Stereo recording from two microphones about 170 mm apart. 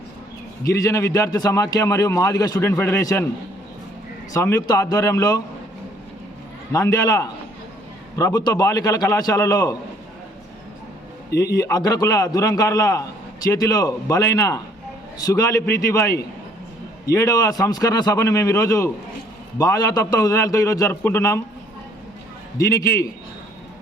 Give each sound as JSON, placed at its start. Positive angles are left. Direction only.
{"t": 0.6, "sound": "a man's voice", "side_deg": 20}
{"t": 4.4, "sound": "a man's voice", "side_deg": 15}
{"t": 6.7, "sound": "a man's voice", "side_deg": 20}
{"t": 11.5, "sound": "a man's voice", "side_deg": 20}
{"t": 22.5, "sound": "a man's voice", "side_deg": 20}